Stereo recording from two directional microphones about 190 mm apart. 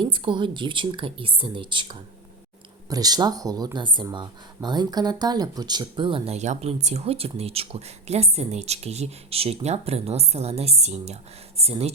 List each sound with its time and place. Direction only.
0.0 s speech: 25° right (ahead or behind)